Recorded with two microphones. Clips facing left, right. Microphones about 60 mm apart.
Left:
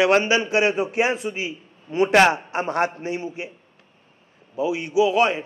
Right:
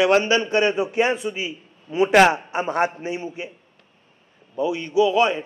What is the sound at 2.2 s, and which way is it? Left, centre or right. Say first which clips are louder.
Speech: right 1 dB; centre.